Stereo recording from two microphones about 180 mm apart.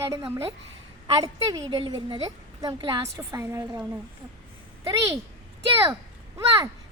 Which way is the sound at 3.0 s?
15° right (ahead or behind).